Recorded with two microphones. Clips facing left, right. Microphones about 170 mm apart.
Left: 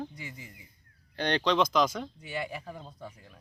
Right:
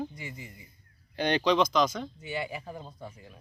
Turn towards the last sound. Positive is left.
turn(degrees=-5)  # may be behind; listen again after turning